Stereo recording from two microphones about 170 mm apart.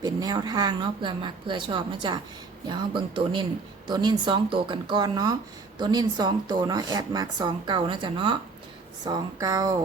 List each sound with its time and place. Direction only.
0.0 s speech: 25° right (ahead or behind)